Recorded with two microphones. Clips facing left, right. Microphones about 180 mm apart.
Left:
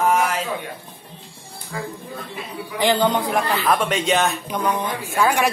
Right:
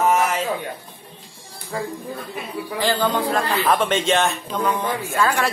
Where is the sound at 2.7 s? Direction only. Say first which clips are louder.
Left 2 dB; 20° left (ahead or behind).